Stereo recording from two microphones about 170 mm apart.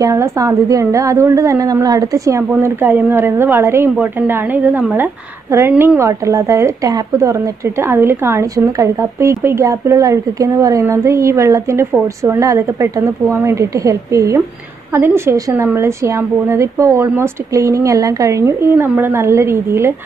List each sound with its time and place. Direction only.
0.0 s speech: 20° right (ahead or behind)